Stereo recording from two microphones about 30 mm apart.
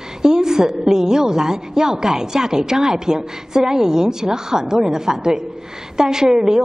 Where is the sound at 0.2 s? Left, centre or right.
Right.